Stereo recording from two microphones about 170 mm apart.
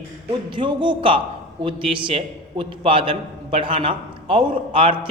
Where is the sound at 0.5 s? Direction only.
30° right (ahead or behind).